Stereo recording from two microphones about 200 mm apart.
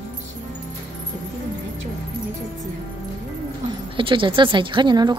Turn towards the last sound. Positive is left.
turn(degrees=-20)  # may be behind; listen again after turning